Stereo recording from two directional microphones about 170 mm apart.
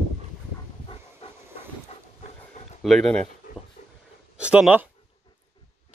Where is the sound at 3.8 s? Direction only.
40° left (ahead or behind).